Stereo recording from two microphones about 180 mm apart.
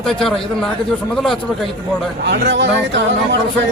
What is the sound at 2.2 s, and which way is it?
Speech, 70° right (ahead or behind).